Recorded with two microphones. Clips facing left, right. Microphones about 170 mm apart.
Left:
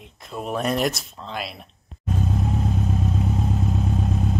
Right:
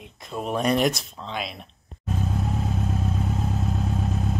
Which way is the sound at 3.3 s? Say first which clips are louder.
Left 3 dB; centre (ahead or behind).